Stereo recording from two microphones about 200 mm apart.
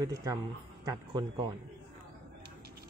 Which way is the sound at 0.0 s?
15° right (ahead or behind).